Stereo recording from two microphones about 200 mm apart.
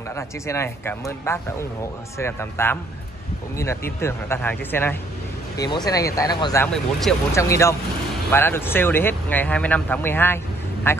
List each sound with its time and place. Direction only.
0.1 s speech: 15° left (ahead or behind)
6.6 s speech: 5° left (ahead or behind)
7.3 s speech: 15° left (ahead or behind)